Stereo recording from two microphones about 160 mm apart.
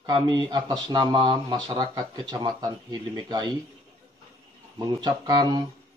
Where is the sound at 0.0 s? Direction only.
25° right (ahead or behind).